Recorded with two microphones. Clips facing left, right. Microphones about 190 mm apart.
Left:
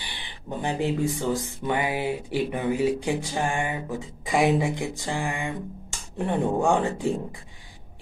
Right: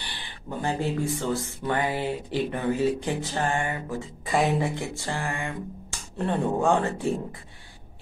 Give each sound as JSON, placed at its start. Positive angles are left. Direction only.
{"t": 0.0, "sound": "speech", "side_deg": 15}